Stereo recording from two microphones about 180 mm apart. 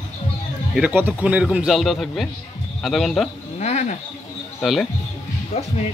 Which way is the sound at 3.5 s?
40° left (ahead or behind).